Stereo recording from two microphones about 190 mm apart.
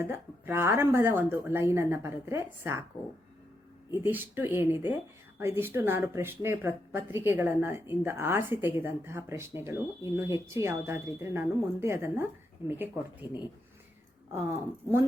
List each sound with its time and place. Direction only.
0.0 s speech: 10° right (ahead or behind)
3.9 s speech: 10° right (ahead or behind)
13.2 s speech: 20° left (ahead or behind)